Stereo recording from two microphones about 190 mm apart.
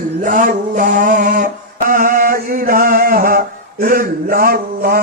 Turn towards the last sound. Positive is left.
turn(degrees=-50)  # may be behind; listen again after turning